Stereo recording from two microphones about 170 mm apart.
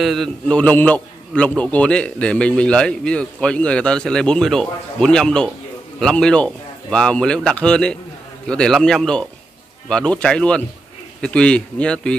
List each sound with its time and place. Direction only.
0.0 s a man's voice: centre (ahead or behind)